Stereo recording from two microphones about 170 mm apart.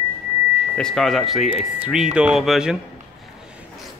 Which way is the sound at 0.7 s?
5° left (ahead or behind).